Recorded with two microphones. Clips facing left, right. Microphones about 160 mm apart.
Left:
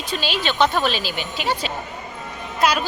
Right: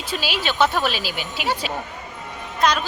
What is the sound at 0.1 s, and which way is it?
Speech, 5° right (ahead or behind).